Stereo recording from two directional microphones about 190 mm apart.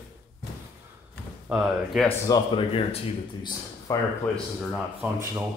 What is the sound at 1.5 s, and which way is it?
Speech, 5° right (ahead or behind).